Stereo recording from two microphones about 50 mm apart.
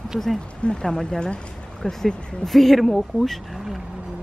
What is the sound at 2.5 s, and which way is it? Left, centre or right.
Speech, centre.